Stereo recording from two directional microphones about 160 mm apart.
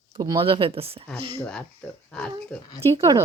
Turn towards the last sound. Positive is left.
turn(degrees=-20)  # may be behind; listen again after turning